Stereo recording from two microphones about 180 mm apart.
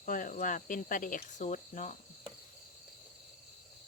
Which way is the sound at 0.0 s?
50° left (ahead or behind).